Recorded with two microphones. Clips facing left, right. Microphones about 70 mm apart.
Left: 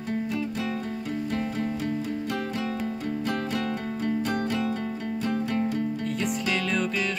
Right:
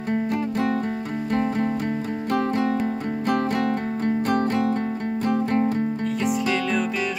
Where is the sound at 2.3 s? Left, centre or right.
Right.